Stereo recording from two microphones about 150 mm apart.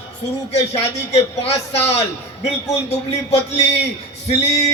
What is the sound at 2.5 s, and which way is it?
Speech, 45° left (ahead or behind).